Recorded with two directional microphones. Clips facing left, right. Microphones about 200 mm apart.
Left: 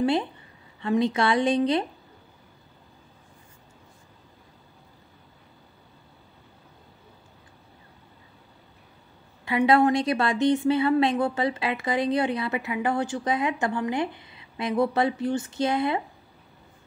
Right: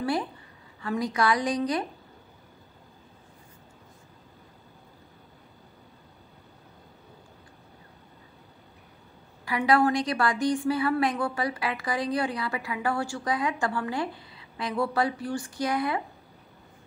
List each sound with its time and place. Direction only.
0.0 s a woman's voice: 25° left (ahead or behind)
9.4 s a woman's voice: 25° left (ahead or behind)